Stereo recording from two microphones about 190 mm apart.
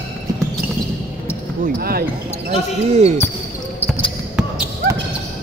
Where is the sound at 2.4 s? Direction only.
35° right (ahead or behind).